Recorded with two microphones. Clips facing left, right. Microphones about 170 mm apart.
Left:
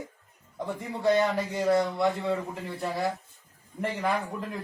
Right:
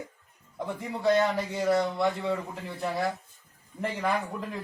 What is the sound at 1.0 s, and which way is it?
A man's voice, centre (ahead or behind).